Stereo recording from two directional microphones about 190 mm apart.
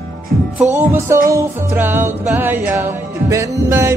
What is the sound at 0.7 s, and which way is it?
Music, 15° right (ahead or behind).